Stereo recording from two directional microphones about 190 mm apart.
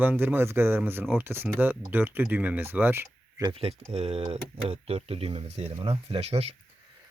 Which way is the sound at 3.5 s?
30° right (ahead or behind).